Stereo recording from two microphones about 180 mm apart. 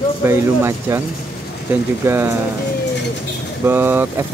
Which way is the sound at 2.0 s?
15° right (ahead or behind).